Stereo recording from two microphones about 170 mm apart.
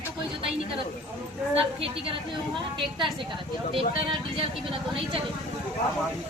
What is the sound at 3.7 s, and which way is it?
Speech, 30° right (ahead or behind).